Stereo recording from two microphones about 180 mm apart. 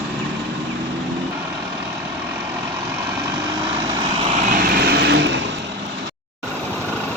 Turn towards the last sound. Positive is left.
turn(degrees=-70)  # may be behind; listen again after turning